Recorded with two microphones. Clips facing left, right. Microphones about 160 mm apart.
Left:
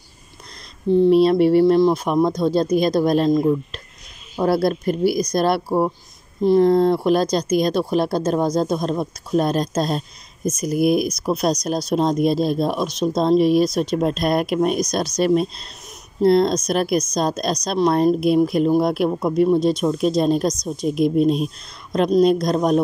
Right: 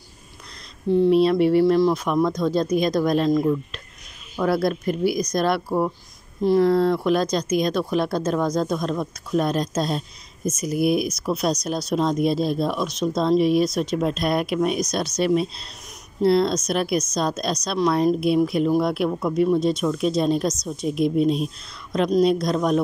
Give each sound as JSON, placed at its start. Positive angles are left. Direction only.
{"t": 1.1, "sound": "speech", "side_deg": 35}